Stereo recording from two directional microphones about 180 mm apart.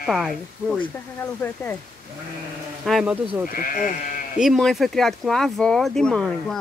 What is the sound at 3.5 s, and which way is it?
Speech, 50° left (ahead or behind).